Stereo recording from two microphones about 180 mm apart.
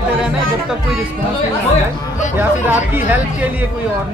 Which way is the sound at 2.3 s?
10° right (ahead or behind).